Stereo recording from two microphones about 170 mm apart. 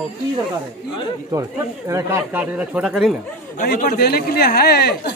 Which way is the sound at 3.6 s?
65° left (ahead or behind).